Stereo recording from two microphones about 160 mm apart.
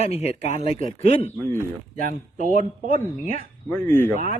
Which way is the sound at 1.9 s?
55° right (ahead or behind).